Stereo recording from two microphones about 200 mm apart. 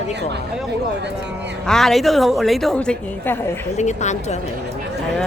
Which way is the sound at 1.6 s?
Centre (ahead or behind).